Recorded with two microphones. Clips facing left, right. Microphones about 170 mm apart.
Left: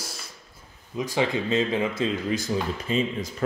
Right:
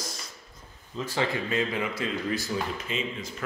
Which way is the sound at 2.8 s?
35° left (ahead or behind).